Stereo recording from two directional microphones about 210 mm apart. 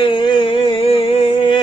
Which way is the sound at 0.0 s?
25° left (ahead or behind).